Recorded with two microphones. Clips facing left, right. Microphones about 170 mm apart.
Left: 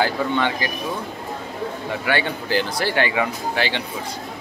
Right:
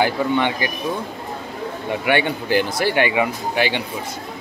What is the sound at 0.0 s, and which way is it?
Speech, 20° right (ahead or behind).